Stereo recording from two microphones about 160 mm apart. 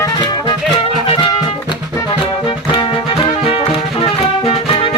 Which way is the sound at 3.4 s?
35° left (ahead or behind).